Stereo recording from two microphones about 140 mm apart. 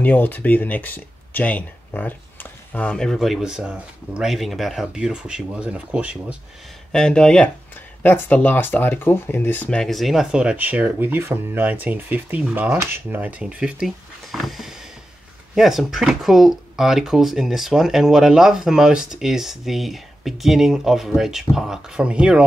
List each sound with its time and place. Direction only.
0.0 s speech: 10° left (ahead or behind); by 6.1 s 10° right (ahead or behind)
6.9 s speech: 5° left (ahead or behind)